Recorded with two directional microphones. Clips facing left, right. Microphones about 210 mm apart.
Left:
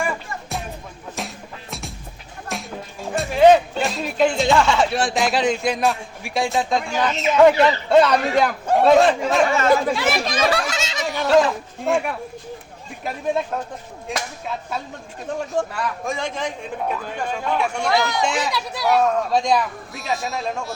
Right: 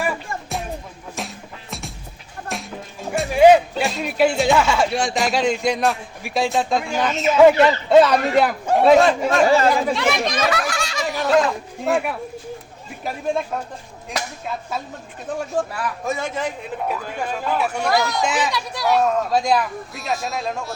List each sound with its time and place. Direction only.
1.2 s music: centre (ahead or behind)
3.1 s speech: 10° right (ahead or behind)
9.5 s speech: 35° right (ahead or behind)
9.8 s speech: 5° left (ahead or behind)
10.5 s fowl: 20° left (ahead or behind)
11.0 s goat: centre (ahead or behind)
11.3 s speech: centre (ahead or behind)
15.7 s speech: 5° right (ahead or behind)